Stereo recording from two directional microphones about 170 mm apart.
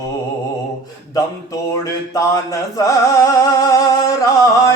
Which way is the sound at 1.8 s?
20° left (ahead or behind).